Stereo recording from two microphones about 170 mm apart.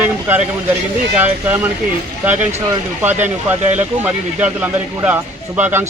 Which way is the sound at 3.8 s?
10° right (ahead or behind).